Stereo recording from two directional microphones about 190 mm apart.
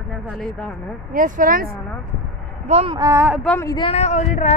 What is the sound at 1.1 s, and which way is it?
Speech, 45° right (ahead or behind).